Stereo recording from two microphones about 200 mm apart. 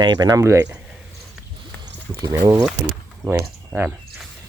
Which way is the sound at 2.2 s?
15° right (ahead or behind).